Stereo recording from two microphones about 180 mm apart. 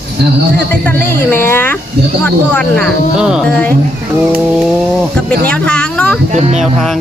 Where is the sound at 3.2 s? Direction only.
5° right (ahead or behind).